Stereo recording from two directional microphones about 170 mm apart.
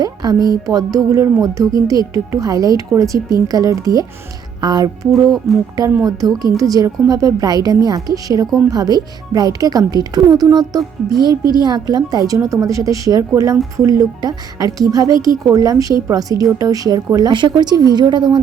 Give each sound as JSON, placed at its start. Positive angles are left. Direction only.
{"t": 0.0, "sound": "music", "side_deg": -25}
{"t": 0.6, "sound": "speech", "side_deg": -20}
{"t": 5.1, "sound": "speech", "side_deg": 0}
{"t": 6.1, "sound": "speech", "side_deg": -20}